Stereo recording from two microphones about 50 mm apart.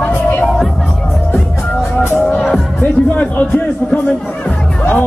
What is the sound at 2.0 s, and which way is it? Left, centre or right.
Music, left.